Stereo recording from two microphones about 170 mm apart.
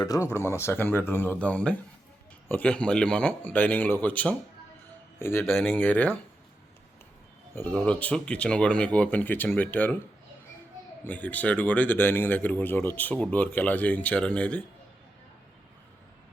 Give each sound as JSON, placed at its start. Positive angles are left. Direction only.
{"t": 0.0, "sound": "speech", "side_deg": 20}
{"t": 7.5, "sound": "speech", "side_deg": 10}
{"t": 11.0, "sound": "speech", "side_deg": 10}